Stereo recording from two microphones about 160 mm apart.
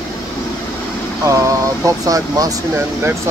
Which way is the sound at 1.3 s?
20° right (ahead or behind).